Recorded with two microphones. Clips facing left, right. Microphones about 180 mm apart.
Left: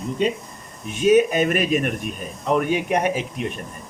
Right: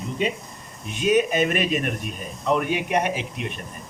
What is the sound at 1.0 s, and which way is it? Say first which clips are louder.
A man's voice: left 4 dB; 40° left (ahead or behind).